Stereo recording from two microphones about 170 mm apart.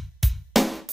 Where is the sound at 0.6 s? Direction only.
Centre (ahead or behind).